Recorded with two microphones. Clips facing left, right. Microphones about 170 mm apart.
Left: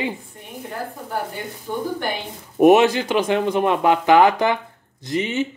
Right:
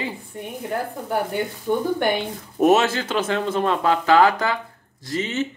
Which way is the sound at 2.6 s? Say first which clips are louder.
Left 4 dB; 15° left (ahead or behind).